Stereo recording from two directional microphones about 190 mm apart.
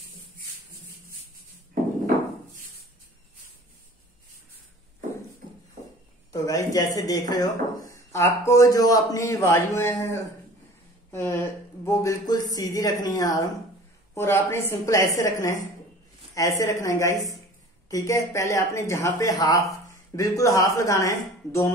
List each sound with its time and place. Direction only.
6.3 s a man's voice: 20° left (ahead or behind)